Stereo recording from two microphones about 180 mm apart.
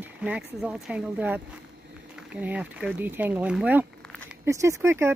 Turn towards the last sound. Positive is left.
turn(degrees=-15)  # may be behind; listen again after turning